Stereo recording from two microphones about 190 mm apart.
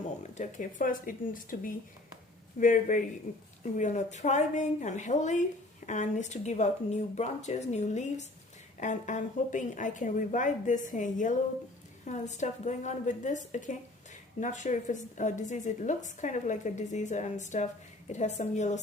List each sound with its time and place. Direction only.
0.2 s a woman's voice: 40° left (ahead or behind)